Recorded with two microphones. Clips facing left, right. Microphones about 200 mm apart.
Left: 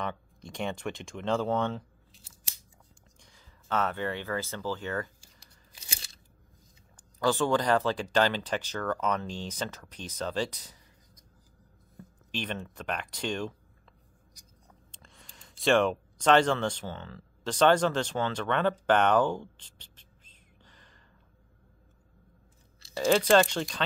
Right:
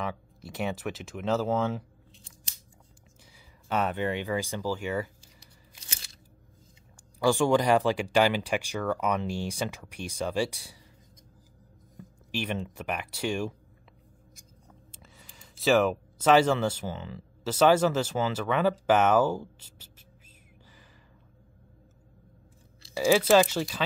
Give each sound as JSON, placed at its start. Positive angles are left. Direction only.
{"t": 0.0, "sound": "speech", "side_deg": -5}
{"t": 3.3, "sound": "speech", "side_deg": -15}
{"t": 7.0, "sound": "speech", "side_deg": -10}
{"t": 12.0, "sound": "speech", "side_deg": -10}
{"t": 14.9, "sound": "speech", "side_deg": -5}
{"t": 22.9, "sound": "speech", "side_deg": -5}